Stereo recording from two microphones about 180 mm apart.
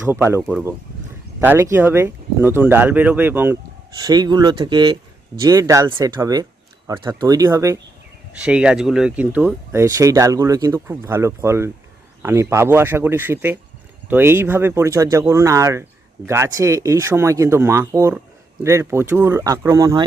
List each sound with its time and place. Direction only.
0.1 s speech: 15° right (ahead or behind)
4.0 s speech: 20° right (ahead or behind)
8.3 s speech: 5° right (ahead or behind)